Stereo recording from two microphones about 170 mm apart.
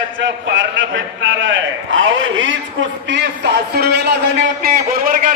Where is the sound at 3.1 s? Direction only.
80° right.